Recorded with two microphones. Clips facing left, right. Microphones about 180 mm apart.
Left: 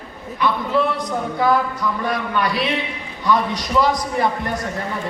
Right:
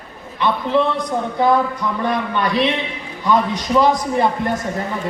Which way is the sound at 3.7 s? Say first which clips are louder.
Right 3 dB; 20° right (ahead or behind).